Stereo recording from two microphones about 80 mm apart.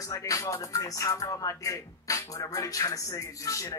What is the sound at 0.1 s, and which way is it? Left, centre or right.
Speech, left.